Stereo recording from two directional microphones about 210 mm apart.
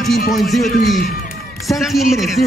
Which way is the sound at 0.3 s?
Centre (ahead or behind).